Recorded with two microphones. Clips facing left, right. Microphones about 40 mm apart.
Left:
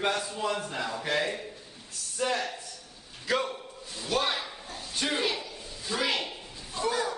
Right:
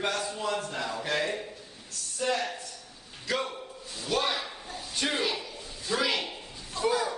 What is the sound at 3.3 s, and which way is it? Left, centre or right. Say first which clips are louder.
Speech: left 2 dB; centre.